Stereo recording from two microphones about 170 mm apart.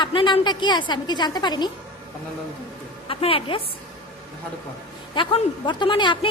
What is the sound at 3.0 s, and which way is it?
Speech, 35° left (ahead or behind).